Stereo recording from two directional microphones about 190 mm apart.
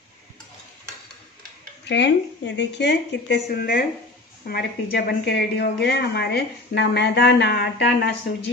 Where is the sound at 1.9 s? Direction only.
65° left (ahead or behind).